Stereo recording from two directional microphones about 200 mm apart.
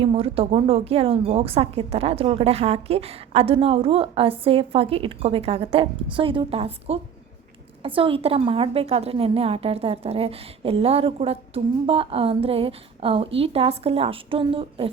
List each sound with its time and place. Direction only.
0.0 s a woman's voice: 30° right (ahead or behind)